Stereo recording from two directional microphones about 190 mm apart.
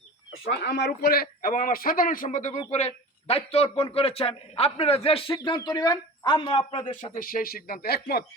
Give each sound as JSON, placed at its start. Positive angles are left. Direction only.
{"t": 0.4, "sound": "a man's voice", "side_deg": 60}
{"t": 6.9, "sound": "a man's voice", "side_deg": 45}